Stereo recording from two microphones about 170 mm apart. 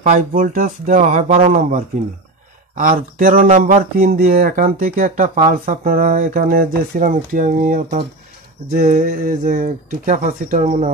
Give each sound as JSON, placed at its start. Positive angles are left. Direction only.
{"t": 0.1, "sound": "speech", "side_deg": -55}
{"t": 2.8, "sound": "speech", "side_deg": -55}